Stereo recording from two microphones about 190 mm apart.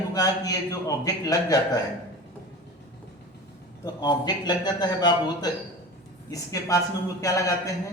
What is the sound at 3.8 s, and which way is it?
A man's voice, 20° left (ahead or behind).